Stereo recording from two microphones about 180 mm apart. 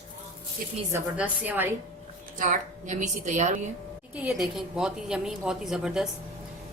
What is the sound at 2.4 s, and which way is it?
A woman's voice, 45° right (ahead or behind).